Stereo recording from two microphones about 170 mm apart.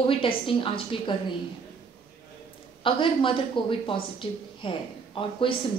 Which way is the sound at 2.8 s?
30° left (ahead or behind).